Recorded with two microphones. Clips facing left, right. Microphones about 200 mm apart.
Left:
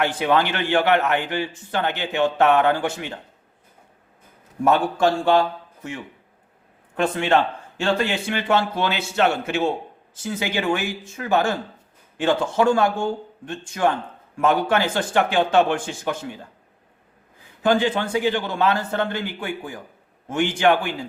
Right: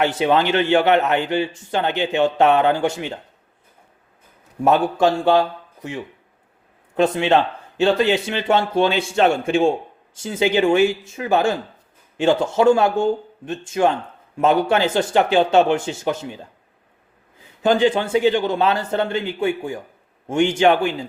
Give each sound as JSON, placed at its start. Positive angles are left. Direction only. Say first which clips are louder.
{"t": 0.0, "sound": "a man's voice", "louder": "right 3 dB", "side_deg": -20}
{"t": 4.6, "sound": "a man's voice", "louder": "right 2 dB", "side_deg": -20}
{"t": 17.6, "sound": "a man's voice", "louder": "right 3 dB", "side_deg": -20}